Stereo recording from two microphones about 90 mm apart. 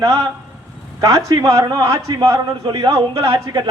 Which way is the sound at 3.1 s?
90° right.